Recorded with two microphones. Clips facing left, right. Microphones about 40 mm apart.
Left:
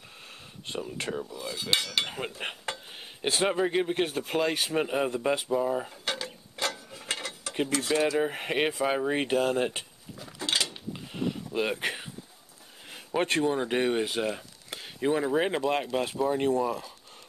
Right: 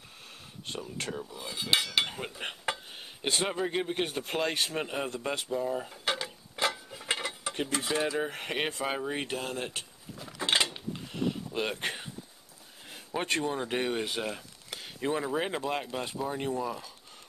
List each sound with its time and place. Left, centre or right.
0.7 s speech: centre
1.3 s cutlery: centre
2.7 s a sound: centre
3.0 s speech: centre
5.9 s mechanisms: centre
7.7 s cutlery: centre
8.2 s speech: centre
9.1 s speech: centre
10.4 s mechanisms: right
10.9 s a sound: centre
12.9 s speech: centre